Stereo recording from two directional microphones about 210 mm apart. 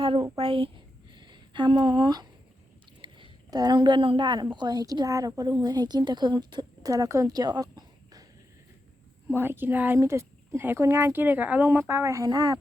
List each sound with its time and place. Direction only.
0.0 s a woman's voice: 25° right (ahead or behind)
1.1 s a sound: 20° right (ahead or behind)
3.0 s a woman's voice: 20° right (ahead or behind)
9.3 s speech: 10° right (ahead or behind)